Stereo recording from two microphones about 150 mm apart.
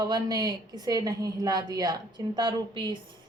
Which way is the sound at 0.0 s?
25° right (ahead or behind).